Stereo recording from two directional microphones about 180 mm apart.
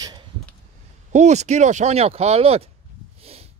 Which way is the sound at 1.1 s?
40° right (ahead or behind).